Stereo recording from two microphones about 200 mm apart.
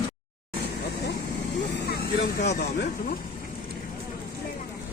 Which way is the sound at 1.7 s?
55° left (ahead or behind).